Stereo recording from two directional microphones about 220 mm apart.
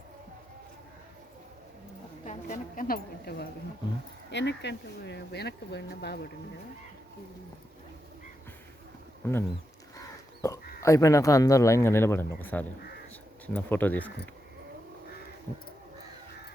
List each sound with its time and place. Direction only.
2.2 s a woman's voice: 35° left (ahead or behind)
9.2 s speech: 10° left (ahead or behind)
10.4 s speech: 15° left (ahead or behind)